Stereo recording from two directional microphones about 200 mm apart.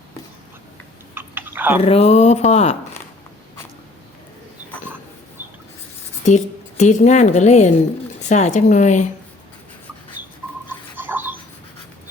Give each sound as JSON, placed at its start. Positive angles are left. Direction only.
{"t": 1.1, "sound": "chewing", "side_deg": -10}
{"t": 1.8, "sound": "speech", "side_deg": 30}
{"t": 6.2, "sound": "a woman's voice", "side_deg": 35}
{"t": 10.7, "sound": "a sound", "side_deg": -10}